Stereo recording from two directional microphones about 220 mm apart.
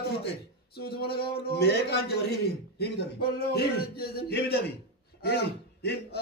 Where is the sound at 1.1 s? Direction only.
45° left (ahead or behind).